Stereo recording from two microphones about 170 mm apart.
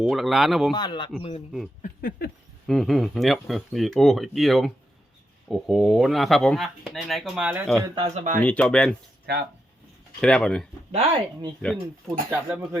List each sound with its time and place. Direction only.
0.0 s speech: centre (ahead or behind)
0.7 s speech: 25° left (ahead or behind)
1.8 s a sound: 55° left (ahead or behind)
2.6 s speech: centre (ahead or behind)
7.9 s speech: 40° right (ahead or behind)
8.4 s speech: 10° left (ahead or behind)
10.2 s speech: 5° left (ahead or behind)
10.9 s speech: 40° right (ahead or behind)
11.6 s speech: 5° left (ahead or behind)
12.3 s speech: 15° right (ahead or behind)